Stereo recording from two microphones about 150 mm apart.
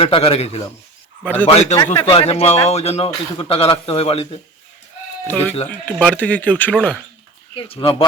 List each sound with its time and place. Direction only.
0.0 s a man's voice: 40° left (ahead or behind)
1.2 s speech: 10° left (ahead or behind)
1.5 s a man's voice: 45° left (ahead or behind)
5.3 s speech: 10° left (ahead or behind)
7.5 s a man's voice: 40° left (ahead or behind)